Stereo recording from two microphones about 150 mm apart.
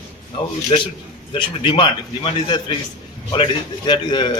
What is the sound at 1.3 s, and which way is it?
A man's voice, 30° left (ahead or behind).